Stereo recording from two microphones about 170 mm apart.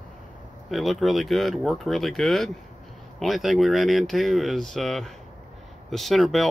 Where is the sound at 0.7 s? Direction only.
Centre (ahead or behind).